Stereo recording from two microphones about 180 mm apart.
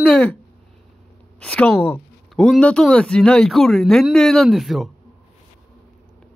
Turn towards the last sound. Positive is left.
turn(degrees=0)  # may be behind; listen again after turning